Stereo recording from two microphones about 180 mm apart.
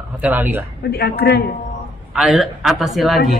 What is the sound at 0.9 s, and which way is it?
Speech, 60° left (ahead or behind).